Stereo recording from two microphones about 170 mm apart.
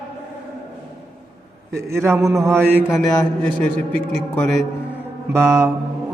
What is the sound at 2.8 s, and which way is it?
A man's voice, centre (ahead or behind).